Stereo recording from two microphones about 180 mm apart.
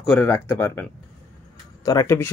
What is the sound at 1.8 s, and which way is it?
Speech, 15° left (ahead or behind).